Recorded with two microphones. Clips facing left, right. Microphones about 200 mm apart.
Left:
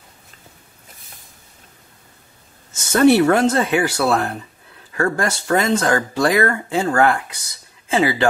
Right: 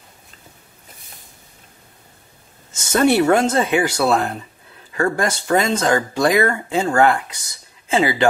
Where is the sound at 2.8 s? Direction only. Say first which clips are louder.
Left 3 dB; 20° right (ahead or behind).